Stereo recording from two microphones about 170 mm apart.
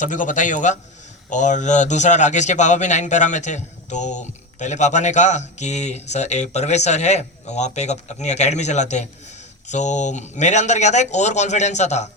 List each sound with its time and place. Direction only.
0.0 s a man's voice: 50° left (ahead or behind)